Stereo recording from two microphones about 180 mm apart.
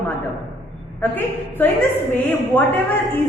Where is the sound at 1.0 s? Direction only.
10° left (ahead or behind).